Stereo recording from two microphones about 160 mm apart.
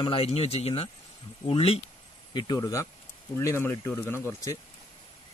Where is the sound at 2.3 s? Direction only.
25° left (ahead or behind).